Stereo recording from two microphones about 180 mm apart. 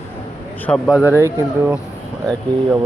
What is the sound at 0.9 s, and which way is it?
Speech, 10° right (ahead or behind).